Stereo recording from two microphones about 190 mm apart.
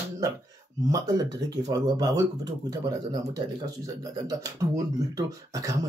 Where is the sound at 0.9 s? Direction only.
20° right (ahead or behind).